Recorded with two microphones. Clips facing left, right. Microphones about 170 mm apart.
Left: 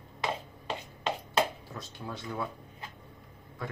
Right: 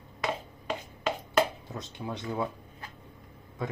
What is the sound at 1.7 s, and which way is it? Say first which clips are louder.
Speech: right 4 dB; 20° right (ahead or behind).